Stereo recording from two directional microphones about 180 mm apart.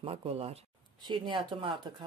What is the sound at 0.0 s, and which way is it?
Speech, 35° right (ahead or behind).